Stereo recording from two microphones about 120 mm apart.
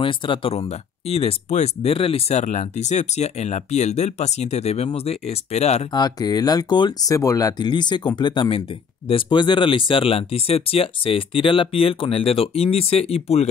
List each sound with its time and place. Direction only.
0.0 s speech: 45° left (ahead or behind); by 5.9 s 65° left (ahead or behind)
5.9 s speech: 35° left (ahead or behind); by 13.5 s 60° left (ahead or behind)